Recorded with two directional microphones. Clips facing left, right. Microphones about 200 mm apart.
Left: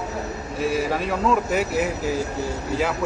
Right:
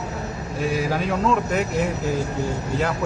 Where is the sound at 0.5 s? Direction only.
Centre (ahead or behind).